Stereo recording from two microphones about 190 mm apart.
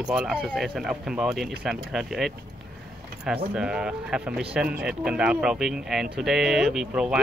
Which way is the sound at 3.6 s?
5° right (ahead or behind).